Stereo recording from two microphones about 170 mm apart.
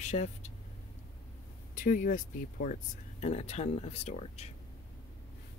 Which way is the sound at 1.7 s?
50° left (ahead or behind).